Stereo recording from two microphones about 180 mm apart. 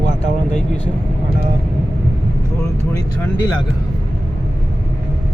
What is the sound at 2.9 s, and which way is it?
Speech, 20° left (ahead or behind).